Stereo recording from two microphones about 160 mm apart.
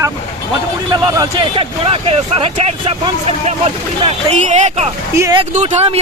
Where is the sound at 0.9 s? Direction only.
30° right (ahead or behind).